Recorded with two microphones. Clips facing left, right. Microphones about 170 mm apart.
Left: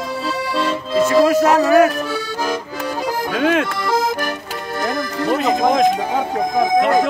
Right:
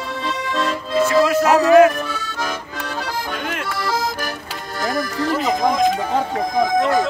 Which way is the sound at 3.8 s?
25° left (ahead or behind).